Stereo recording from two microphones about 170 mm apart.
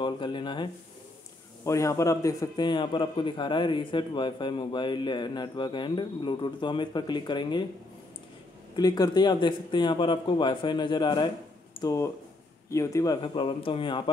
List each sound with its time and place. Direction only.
0.0 s a man's voice: 30° left (ahead or behind)
8.7 s a man's voice: 25° left (ahead or behind)